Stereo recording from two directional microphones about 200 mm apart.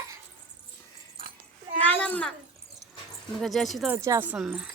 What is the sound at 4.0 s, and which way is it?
Speech, 15° right (ahead or behind).